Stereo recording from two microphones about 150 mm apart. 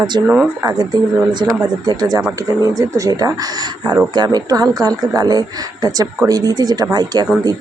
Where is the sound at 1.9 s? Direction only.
25° right (ahead or behind).